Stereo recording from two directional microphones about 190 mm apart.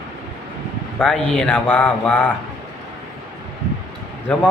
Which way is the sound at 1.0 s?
5° left (ahead or behind).